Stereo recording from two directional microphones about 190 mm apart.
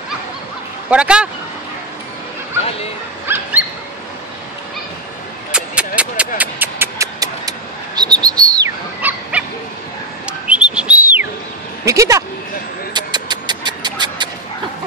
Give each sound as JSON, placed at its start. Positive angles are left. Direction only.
{"t": 0.8, "sound": "speech", "side_deg": -5}
{"t": 3.3, "sound": "bird", "side_deg": -10}
{"t": 5.5, "sound": "a sound", "side_deg": -5}
{"t": 10.2, "sound": "whistle", "side_deg": -5}
{"t": 11.8, "sound": "speech", "side_deg": -15}
{"t": 12.9, "sound": "a sound", "side_deg": -20}